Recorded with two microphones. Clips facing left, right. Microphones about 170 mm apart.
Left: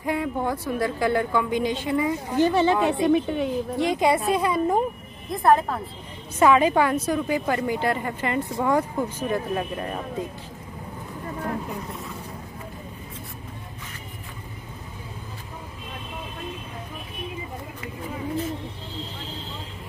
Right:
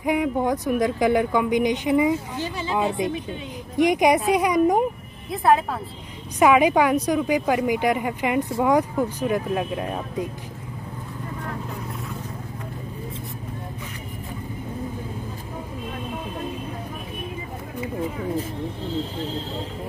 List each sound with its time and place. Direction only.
0.0 s speech: 15° right (ahead or behind)
2.4 s a woman's voice: 65° left (ahead or behind)
3.5 s speech: 15° right (ahead or behind)
5.3 s speech: 5° right (ahead or behind)